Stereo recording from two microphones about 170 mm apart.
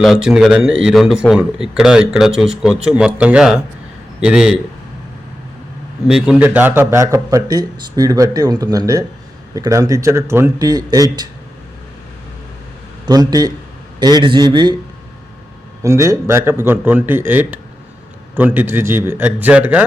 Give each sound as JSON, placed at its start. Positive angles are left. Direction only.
{"t": 0.0, "sound": "speech", "side_deg": 0}
{"t": 6.1, "sound": "speech", "side_deg": -5}
{"t": 13.1, "sound": "speech", "side_deg": -25}
{"t": 15.8, "sound": "a man's voice", "side_deg": -20}